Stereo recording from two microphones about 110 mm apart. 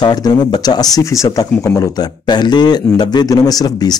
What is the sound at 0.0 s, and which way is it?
Speech, 40° left (ahead or behind).